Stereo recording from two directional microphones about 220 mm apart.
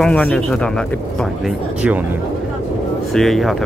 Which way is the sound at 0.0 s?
5° left (ahead or behind).